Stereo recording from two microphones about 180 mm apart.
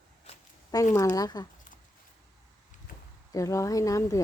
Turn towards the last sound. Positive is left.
turn(degrees=15)  # may be behind; listen again after turning